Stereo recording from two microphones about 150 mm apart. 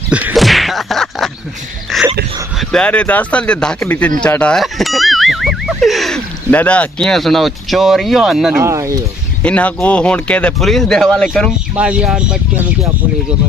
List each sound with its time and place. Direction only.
0.1 s a sound: 5° right (ahead or behind)
2.7 s speech: 10° left (ahead or behind)
8.6 s speech: 20° right (ahead or behind)
9.4 s speech: 10° left (ahead or behind)
11.7 s speech: 5° right (ahead or behind)